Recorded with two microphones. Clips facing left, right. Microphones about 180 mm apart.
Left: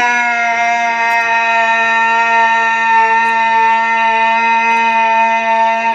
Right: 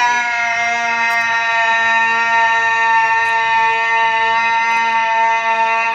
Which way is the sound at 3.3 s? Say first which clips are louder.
Left 4 dB; 55° left (ahead or behind).